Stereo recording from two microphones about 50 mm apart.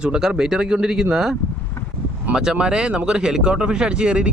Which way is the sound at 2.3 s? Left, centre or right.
Centre.